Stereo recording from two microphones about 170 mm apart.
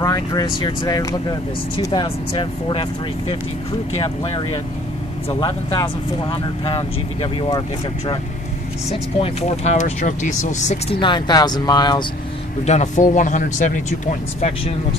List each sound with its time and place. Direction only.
0.0 s speech: 20° left (ahead or behind)
9.2 s speech: 40° left (ahead or behind)
11.0 s speech: 25° left (ahead or behind)
12.6 s speech: 45° left (ahead or behind)
14.4 s speech: 35° left (ahead or behind)